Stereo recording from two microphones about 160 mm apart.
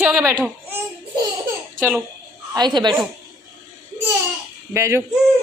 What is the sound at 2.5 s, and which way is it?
Speech, 25° right (ahead or behind).